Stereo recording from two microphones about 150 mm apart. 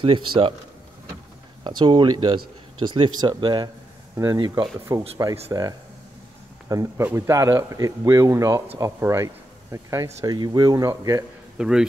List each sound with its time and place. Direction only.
0.0 s speech: 35° right (ahead or behind)
1.8 s speech: 30° right (ahead or behind)
11.5 s a man's voice: 5° right (ahead or behind)